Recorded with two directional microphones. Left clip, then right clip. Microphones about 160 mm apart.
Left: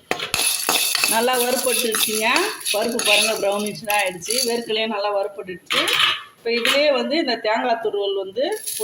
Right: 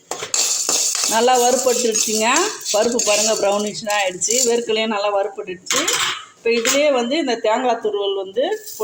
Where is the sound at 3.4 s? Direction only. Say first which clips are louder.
Right 3 dB; 15° right (ahead or behind).